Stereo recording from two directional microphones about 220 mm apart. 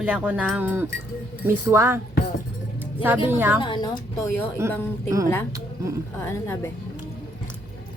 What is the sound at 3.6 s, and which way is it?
Speech, 20° left (ahead or behind).